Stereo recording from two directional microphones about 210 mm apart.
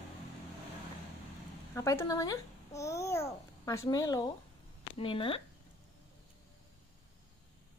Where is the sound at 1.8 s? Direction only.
15° left (ahead or behind).